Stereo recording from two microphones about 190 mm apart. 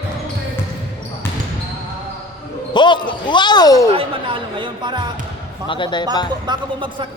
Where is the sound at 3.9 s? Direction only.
25° right (ahead or behind).